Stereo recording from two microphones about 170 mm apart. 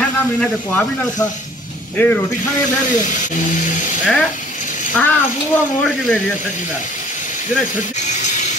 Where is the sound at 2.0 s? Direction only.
10° left (ahead or behind).